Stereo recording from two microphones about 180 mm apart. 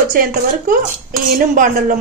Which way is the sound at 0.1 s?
50° right (ahead or behind).